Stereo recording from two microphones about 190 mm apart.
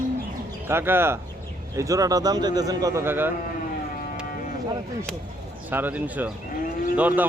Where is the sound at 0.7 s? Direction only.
10° right (ahead or behind).